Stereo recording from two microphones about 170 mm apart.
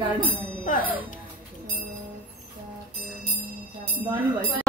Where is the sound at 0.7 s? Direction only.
50° left (ahead or behind).